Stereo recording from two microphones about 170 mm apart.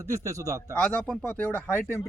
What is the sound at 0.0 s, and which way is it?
Speech, 15° right (ahead or behind).